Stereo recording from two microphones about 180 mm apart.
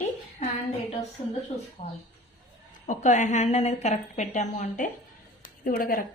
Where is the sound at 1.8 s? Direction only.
35° left (ahead or behind).